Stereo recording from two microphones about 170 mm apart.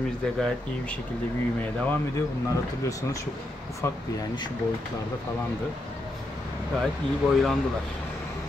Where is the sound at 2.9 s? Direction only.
20° left (ahead or behind).